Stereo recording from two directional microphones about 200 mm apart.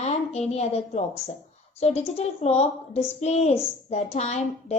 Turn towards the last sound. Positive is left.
turn(degrees=35)  # may be behind; listen again after turning